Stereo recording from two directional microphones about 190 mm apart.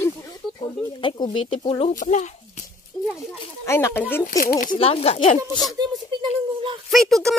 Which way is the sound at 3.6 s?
15° left (ahead or behind).